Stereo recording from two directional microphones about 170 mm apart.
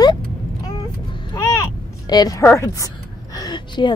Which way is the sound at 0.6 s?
25° left (ahead or behind).